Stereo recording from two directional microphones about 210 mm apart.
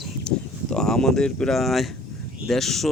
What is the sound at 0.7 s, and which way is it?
Speech, 5° left (ahead or behind).